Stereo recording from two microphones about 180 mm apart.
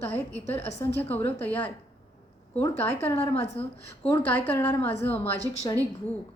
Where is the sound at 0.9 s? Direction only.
10° left (ahead or behind).